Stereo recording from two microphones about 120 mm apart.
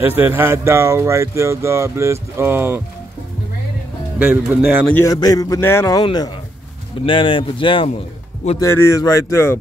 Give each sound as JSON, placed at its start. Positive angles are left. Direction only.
{"t": 0.0, "sound": "speech", "side_deg": -15}
{"t": 4.2, "sound": "speech", "side_deg": -10}
{"t": 5.0, "sound": "a man's voice", "side_deg": 30}
{"t": 7.1, "sound": "speech", "side_deg": 45}
{"t": 8.5, "sound": "speech", "side_deg": 20}